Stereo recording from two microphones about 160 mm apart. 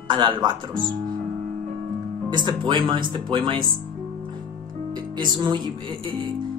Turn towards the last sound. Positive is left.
turn(degrees=-30)  # may be behind; listen again after turning